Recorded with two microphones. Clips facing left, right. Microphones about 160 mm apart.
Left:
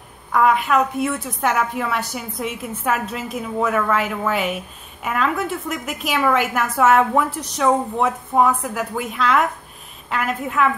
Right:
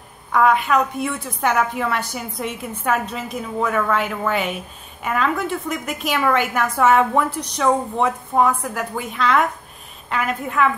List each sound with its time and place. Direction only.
0.3 s a woman's voice: centre (ahead or behind)